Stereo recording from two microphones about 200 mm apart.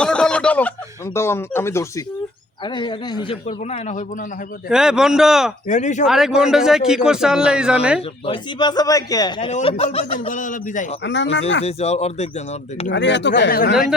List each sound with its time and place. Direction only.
0.0 s a sound: 5° left (ahead or behind)
1.1 s speech: 10° left (ahead or behind); by 4.0 s 35° left (ahead or behind)
4.7 s a man's voice: 5° right (ahead or behind)
5.6 s a man's voice: 35° left (ahead or behind)
6.1 s a man's voice: centre (ahead or behind)
8.3 s speech: 20° left (ahead or behind)
9.5 s a man's voice: 35° left (ahead or behind)
11.0 s speech: 65° left (ahead or behind)
11.6 s a man's voice: 30° left (ahead or behind)
12.9 s speech: 60° left (ahead or behind)